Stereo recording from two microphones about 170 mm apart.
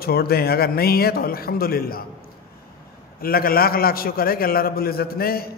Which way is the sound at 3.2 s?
60° left (ahead or behind).